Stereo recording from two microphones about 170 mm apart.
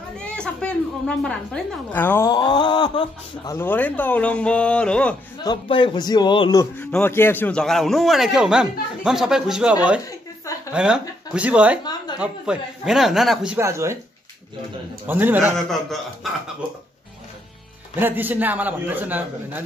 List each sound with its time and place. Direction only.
0.2 s a woman's voice: 5° left (ahead or behind); by 3.5 s 25° left (ahead or behind)
3.5 s speech: 10° left (ahead or behind)
5.4 s a man's voice: 25° left (ahead or behind)
6.8 s a man's voice: 10° left (ahead or behind); by 11.8 s 10° right (ahead or behind)
11.8 s a sound: 25° left (ahead or behind)
12.2 s a man's voice: 5° right (ahead or behind)
13.6 s a man's voice: 15° right (ahead or behind)
15.0 s a man's voice: 10° right (ahead or behind)
15.5 s a man's voice: centre (ahead or behind)
17.9 s a man's voice: 10° right (ahead or behind)